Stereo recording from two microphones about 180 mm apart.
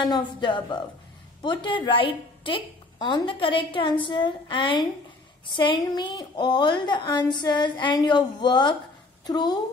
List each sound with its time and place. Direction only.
0.0 s a woman's voice: 25° left (ahead or behind)